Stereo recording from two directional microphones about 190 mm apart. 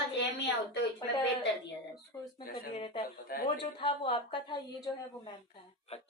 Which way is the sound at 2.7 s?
25° left (ahead or behind).